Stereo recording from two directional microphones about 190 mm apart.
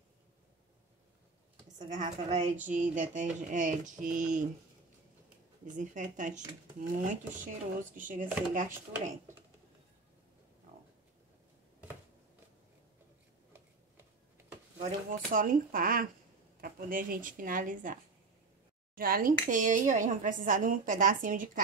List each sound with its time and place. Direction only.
1.9 s a woman's voice: 40° right (ahead or behind)
5.8 s speech: 40° right (ahead or behind)
15.0 s speech: 45° right (ahead or behind)
18.9 s speech: 50° right (ahead or behind)